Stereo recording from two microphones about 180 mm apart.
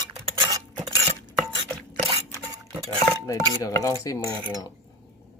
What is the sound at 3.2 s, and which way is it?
Speech, 20° left (ahead or behind).